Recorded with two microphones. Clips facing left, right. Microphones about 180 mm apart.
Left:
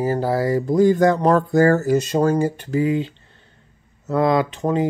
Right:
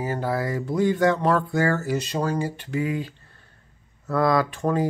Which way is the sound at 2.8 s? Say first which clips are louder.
Left 7 dB; 25° left (ahead or behind).